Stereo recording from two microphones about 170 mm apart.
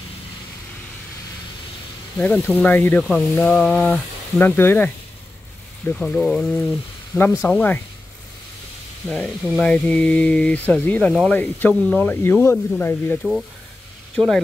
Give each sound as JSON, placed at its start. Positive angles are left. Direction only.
{"t": 2.1, "sound": "speech", "side_deg": 10}
{"t": 9.1, "sound": "speech", "side_deg": 0}